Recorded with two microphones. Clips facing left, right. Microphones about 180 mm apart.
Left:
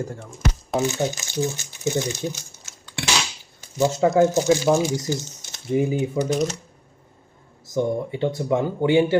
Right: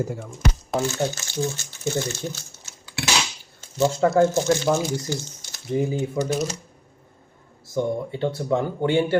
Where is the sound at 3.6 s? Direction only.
15° left (ahead or behind).